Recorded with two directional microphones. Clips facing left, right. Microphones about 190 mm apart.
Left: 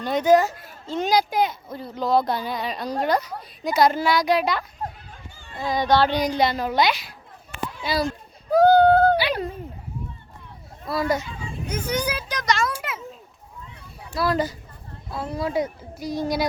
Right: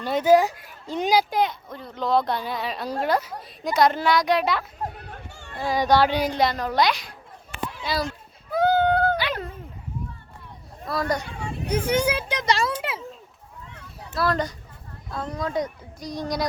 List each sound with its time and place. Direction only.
0.0 s speech: 5° right (ahead or behind)
1.3 s speech: centre (ahead or behind)
4.9 s a sound: 65° right (ahead or behind)
5.5 s speech: 10° right (ahead or behind)
8.4 s a sound: 40° left (ahead or behind)
9.1 s dog: 10° left (ahead or behind)
10.8 s speech: centre (ahead or behind)
11.3 s speech: 70° right (ahead or behind)
11.7 s speech: 30° right (ahead or behind)
14.2 s speech: 5° left (ahead or behind)